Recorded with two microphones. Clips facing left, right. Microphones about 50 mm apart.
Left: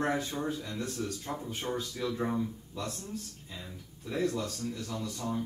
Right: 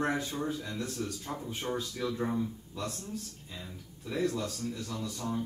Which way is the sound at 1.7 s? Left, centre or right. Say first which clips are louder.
Even; centre.